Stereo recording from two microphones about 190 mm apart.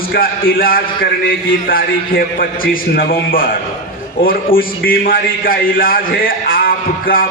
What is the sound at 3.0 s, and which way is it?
A man's voice, 50° left (ahead or behind).